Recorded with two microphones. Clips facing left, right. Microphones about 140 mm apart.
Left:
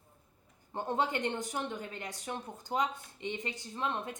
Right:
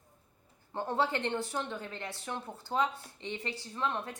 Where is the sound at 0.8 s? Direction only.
15° left (ahead or behind).